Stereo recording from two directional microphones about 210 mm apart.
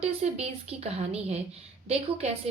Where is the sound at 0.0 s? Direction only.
30° right (ahead or behind).